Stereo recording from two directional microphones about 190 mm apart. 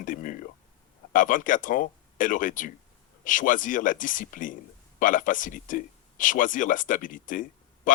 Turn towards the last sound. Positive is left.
turn(degrees=45)  # may be behind; listen again after turning